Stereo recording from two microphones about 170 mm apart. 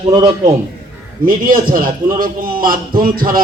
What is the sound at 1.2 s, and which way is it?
A man's voice, 55° right (ahead or behind).